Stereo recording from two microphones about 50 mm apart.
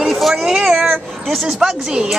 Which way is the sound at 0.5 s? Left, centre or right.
Centre.